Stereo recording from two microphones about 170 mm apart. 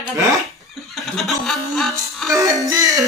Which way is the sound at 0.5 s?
Centre (ahead or behind).